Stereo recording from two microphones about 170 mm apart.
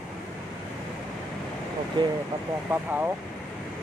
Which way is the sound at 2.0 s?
25° right (ahead or behind).